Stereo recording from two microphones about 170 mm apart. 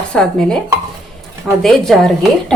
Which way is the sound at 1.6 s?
Centre (ahead or behind).